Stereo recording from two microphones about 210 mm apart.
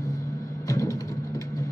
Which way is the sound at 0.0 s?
15° left (ahead or behind).